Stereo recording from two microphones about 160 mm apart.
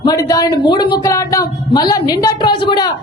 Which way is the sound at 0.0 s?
20° left (ahead or behind).